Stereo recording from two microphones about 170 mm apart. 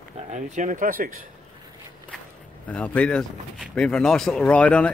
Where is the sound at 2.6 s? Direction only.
5° left (ahead or behind).